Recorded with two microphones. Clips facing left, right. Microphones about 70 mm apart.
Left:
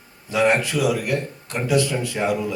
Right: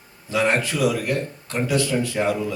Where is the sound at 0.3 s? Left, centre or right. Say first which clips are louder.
Left 2 dB; centre.